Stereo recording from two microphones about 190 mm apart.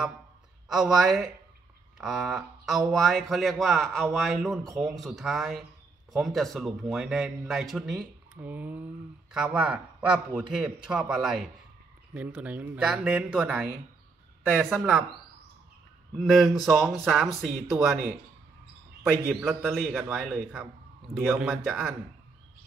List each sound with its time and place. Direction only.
0.7 s speech: 5° right (ahead or behind)
16.2 s speech: centre (ahead or behind)
19.4 s speech: centre (ahead or behind)